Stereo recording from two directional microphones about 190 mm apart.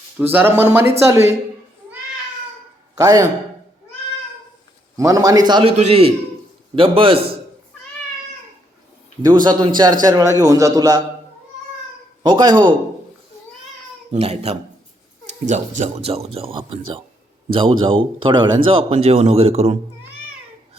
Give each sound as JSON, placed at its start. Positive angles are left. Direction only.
{"t": 0.2, "sound": "speech", "side_deg": -10}
{"t": 2.9, "sound": "a man's voice", "side_deg": -20}
{"t": 4.9, "sound": "a man's voice", "side_deg": -20}
{"t": 5.7, "sound": "a man's voice", "side_deg": -35}
{"t": 9.2, "sound": "a man's voice", "side_deg": -25}
{"t": 12.2, "sound": "a man's voice", "side_deg": -25}
{"t": 14.1, "sound": "a man's voice", "side_deg": -35}